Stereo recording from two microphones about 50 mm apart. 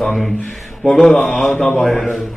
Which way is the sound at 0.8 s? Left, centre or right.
Centre.